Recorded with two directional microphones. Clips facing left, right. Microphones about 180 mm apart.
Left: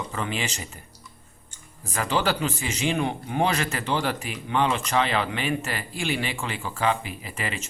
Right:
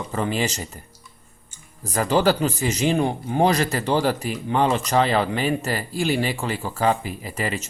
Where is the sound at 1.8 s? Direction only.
40° right (ahead or behind).